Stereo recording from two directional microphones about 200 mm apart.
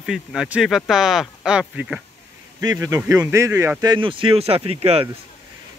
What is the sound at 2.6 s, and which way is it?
Speech, 15° right (ahead or behind).